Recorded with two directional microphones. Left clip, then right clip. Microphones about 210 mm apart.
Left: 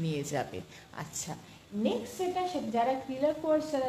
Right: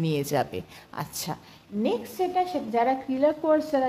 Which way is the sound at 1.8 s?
55° right (ahead or behind).